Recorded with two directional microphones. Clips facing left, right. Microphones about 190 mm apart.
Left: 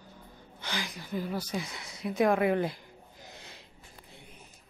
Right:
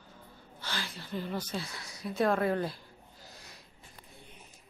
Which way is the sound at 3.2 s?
25° left (ahead or behind).